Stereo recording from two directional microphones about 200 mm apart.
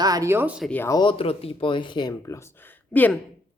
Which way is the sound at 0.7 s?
10° left (ahead or behind).